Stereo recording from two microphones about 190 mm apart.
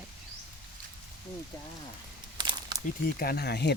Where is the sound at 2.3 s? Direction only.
25° right (ahead or behind).